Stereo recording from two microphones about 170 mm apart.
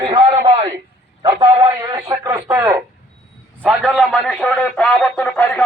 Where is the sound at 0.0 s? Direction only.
25° right (ahead or behind).